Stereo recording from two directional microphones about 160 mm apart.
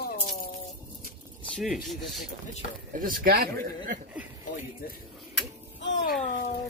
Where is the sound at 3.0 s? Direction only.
70° right (ahead or behind).